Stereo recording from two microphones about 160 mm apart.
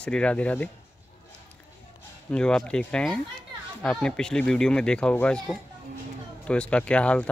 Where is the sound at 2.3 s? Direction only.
5° left (ahead or behind).